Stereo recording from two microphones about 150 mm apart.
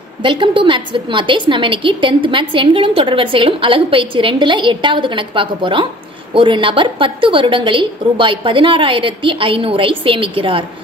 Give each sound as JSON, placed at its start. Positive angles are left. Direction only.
{"t": 0.2, "sound": "a woman's voice", "side_deg": -35}